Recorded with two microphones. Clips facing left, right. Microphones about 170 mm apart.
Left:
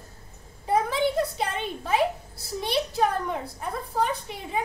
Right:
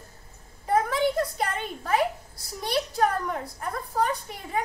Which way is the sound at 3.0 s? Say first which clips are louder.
Right 1 dB; 20° left (ahead or behind).